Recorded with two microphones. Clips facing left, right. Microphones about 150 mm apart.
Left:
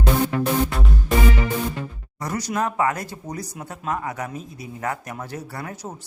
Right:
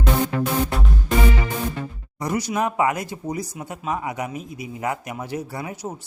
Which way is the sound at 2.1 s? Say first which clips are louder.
Right 2 dB; 15° right (ahead or behind).